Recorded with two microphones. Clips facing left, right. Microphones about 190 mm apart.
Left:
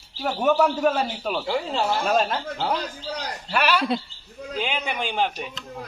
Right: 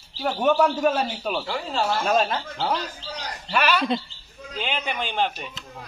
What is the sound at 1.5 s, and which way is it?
Speech, 15° left (ahead or behind).